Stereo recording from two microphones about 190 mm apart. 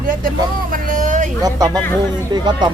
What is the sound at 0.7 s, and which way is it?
Speech, 45° right (ahead or behind).